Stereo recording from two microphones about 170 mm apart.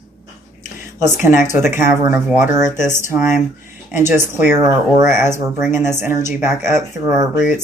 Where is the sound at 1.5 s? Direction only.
15° right (ahead or behind).